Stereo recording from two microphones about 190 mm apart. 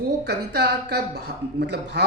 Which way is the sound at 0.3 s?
60° right (ahead or behind).